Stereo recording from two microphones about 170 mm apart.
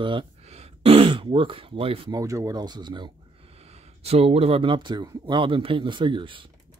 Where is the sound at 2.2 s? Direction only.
20° right (ahead or behind).